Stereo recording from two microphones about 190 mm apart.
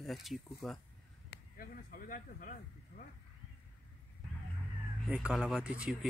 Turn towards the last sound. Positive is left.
turn(degrees=-5)  # may be behind; listen again after turning